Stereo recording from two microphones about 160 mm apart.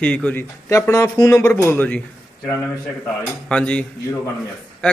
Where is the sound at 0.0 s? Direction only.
10° left (ahead or behind).